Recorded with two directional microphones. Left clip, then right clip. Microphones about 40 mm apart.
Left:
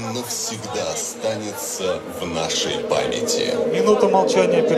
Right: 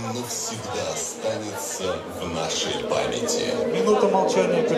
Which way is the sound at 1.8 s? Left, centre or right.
Left.